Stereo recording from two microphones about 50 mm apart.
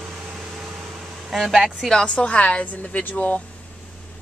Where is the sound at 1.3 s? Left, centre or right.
Centre.